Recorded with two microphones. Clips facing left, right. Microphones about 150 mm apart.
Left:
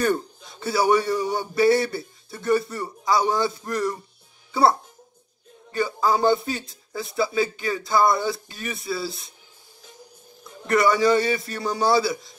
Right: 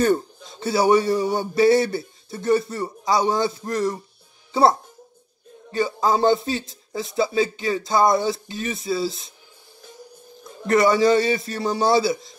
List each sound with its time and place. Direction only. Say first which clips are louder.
0.0 s a man's voice: right 3 dB; 20° right (ahead or behind)
1.0 s a sound: right 3 dB; 35° right (ahead or behind)
1.3 s a man's voice: right 2 dB; 20° right (ahead or behind)
10.7 s a man's voice: right 2 dB; 25° right (ahead or behind)